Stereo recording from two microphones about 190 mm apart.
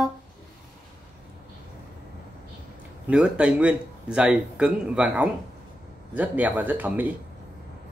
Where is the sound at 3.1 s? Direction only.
5° right (ahead or behind).